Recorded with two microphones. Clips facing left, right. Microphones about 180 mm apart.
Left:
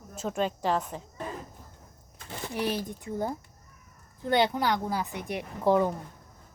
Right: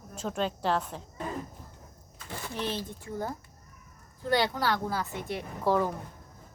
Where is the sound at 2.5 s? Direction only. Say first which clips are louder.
Left 4 dB; 10° left (ahead or behind).